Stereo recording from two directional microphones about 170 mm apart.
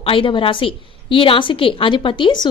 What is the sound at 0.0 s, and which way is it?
A woman's voice, 30° left (ahead or behind).